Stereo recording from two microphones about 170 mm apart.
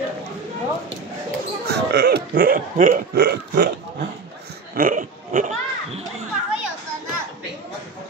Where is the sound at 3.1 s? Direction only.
65° right (ahead or behind).